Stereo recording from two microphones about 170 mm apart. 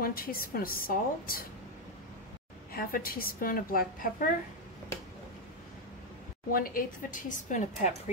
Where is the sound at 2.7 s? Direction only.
60° left (ahead or behind).